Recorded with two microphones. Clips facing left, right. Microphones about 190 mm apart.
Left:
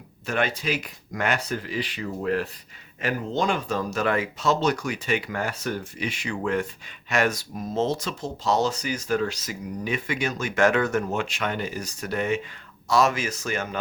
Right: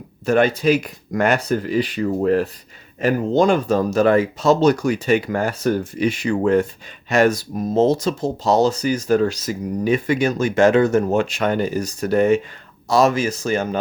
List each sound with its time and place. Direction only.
0.3 s speech: 40° right (ahead or behind)
11.0 s speech: 40° right (ahead or behind)